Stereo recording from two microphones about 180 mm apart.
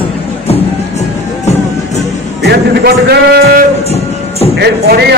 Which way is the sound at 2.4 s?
65° right (ahead or behind).